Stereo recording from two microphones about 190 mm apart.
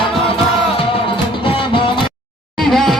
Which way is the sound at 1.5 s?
30° left (ahead or behind).